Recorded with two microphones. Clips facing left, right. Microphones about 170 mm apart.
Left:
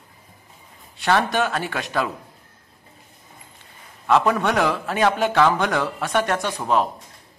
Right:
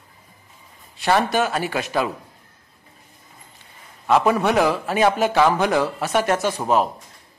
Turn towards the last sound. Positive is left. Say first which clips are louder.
# right 2 dB
turn(degrees=-5)  # may be behind; listen again after turning